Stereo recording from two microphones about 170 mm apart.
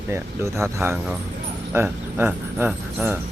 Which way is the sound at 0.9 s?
5° right (ahead or behind).